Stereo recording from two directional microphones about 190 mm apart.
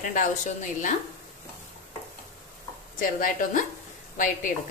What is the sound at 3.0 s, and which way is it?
Speech, 45° left (ahead or behind).